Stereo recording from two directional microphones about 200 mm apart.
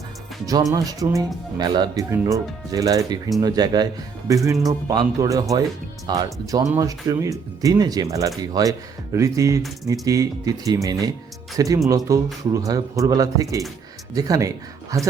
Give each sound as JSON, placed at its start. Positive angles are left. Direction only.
{"t": 0.4, "sound": "speech", "side_deg": -20}